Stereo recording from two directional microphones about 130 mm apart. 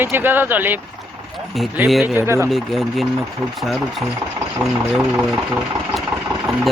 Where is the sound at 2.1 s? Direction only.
20° right (ahead or behind).